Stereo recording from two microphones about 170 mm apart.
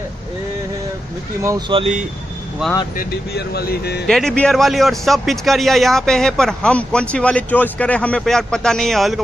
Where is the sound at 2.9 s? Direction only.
60° left (ahead or behind).